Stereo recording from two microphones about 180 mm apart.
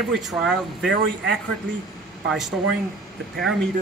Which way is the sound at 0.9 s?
70° right (ahead or behind).